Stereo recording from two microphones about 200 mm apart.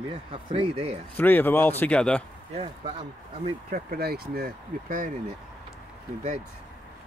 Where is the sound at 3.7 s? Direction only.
50° right (ahead or behind).